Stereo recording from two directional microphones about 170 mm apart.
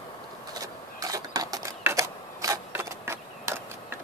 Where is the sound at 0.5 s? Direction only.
20° right (ahead or behind).